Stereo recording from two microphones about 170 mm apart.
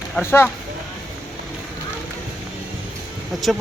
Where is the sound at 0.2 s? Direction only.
15° left (ahead or behind).